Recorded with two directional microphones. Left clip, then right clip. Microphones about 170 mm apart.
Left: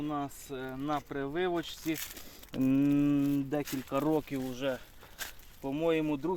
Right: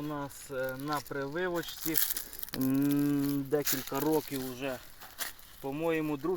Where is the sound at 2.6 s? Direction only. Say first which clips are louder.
Left 2 dB; 30° left (ahead or behind).